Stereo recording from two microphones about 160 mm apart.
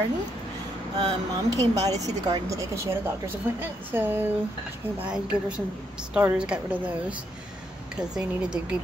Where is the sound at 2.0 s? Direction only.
25° right (ahead or behind); by 8.7 s 5° right (ahead or behind).